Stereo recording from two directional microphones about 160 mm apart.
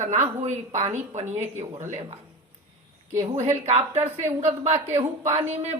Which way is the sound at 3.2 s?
45° right (ahead or behind).